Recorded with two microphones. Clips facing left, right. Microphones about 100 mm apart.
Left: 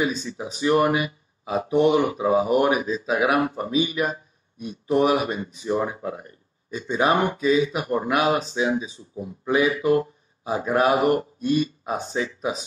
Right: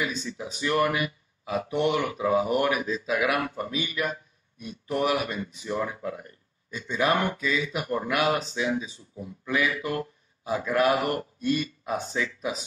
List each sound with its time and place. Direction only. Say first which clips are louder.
0.0 s speech: left 5 dB; 25° left (ahead or behind)